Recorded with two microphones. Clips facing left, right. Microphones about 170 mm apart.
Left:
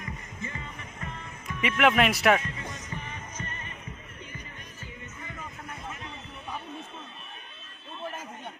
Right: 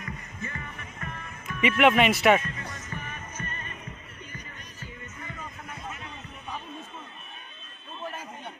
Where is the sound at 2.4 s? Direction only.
20° left (ahead or behind).